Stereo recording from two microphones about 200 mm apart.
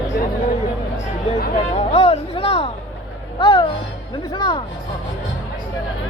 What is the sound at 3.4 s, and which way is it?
Music, 25° left (ahead or behind).